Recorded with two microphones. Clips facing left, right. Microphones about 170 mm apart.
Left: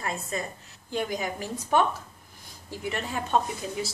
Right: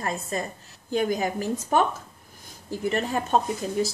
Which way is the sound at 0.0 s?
40° right (ahead or behind).